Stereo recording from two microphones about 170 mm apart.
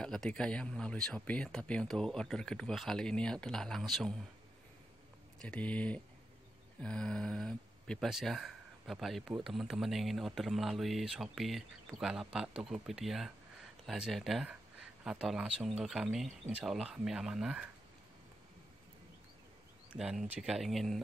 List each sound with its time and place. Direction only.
0.0 s speech: 5° left (ahead or behind)
5.4 s speech: 5° left (ahead or behind)
19.9 s speech: 5° right (ahead or behind)